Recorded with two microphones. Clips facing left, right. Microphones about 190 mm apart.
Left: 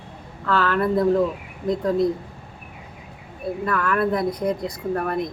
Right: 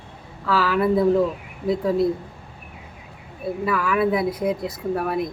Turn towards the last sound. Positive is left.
turn(degrees=-5)  # may be behind; listen again after turning